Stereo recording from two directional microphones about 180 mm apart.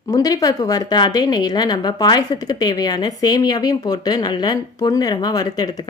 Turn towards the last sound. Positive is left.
turn(degrees=20)  # may be behind; listen again after turning